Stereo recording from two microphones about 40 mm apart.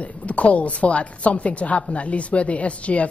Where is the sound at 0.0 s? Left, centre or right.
Left.